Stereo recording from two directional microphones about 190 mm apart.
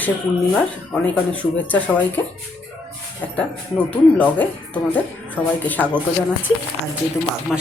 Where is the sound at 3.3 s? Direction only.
5° left (ahead or behind).